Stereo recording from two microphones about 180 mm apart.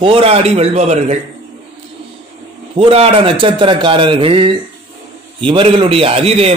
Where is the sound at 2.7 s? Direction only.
30° right (ahead or behind).